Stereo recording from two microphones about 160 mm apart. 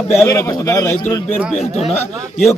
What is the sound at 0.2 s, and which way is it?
Speech, 20° left (ahead or behind).